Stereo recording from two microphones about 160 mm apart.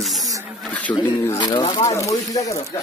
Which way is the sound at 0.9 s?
25° left (ahead or behind).